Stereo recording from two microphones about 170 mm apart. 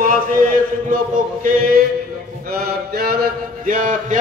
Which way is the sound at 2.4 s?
65° right (ahead or behind).